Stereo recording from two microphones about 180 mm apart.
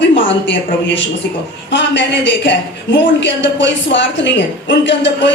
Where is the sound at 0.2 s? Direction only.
90° left.